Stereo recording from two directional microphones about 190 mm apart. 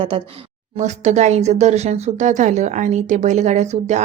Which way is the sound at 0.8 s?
40° right (ahead or behind).